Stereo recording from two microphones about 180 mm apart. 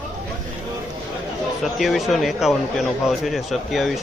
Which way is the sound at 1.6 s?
Centre (ahead or behind).